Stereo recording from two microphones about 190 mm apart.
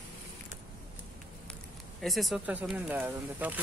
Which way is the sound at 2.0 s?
Centre (ahead or behind).